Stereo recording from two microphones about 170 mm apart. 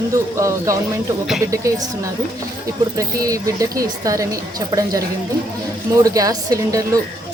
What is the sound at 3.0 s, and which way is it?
Speech, 20° right (ahead or behind).